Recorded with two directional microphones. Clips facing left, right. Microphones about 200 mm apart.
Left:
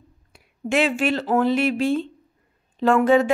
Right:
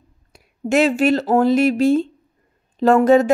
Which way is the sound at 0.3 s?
40° right (ahead or behind).